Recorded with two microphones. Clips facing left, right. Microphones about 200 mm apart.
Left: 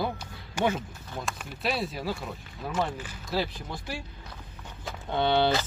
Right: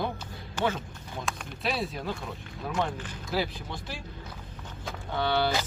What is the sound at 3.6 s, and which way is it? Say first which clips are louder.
Speech: left 2 dB; 5° left (ahead or behind).